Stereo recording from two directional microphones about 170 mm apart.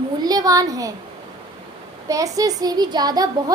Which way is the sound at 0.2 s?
20° right (ahead or behind).